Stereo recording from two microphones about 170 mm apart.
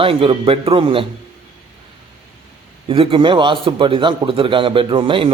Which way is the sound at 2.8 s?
35° right (ahead or behind).